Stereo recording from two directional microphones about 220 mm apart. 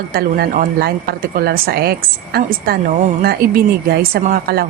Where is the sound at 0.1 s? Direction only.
40° right (ahead or behind).